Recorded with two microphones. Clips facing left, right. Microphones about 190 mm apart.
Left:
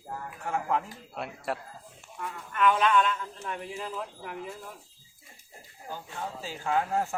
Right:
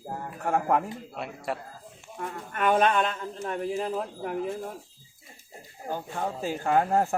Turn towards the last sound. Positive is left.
turn(degrees=-55)  # may be behind; listen again after turning